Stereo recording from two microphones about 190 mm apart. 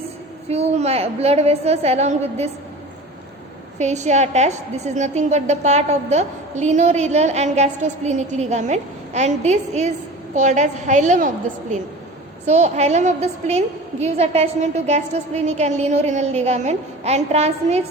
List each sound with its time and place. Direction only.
0.4 s a woman's voice: 35° right (ahead or behind)
3.8 s a woman's voice: 40° right (ahead or behind)
12.5 s a woman's voice: 35° right (ahead or behind)